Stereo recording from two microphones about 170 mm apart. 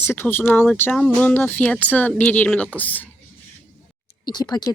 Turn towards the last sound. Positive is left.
turn(degrees=25)  # may be behind; listen again after turning